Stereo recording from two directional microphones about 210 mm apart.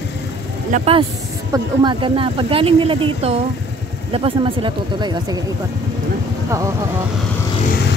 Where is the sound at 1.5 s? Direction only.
20° right (ahead or behind).